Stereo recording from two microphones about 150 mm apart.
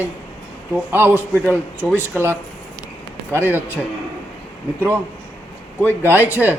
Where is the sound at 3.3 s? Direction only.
15° right (ahead or behind).